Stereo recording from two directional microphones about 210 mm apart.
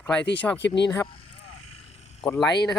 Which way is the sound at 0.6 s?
55° left (ahead or behind).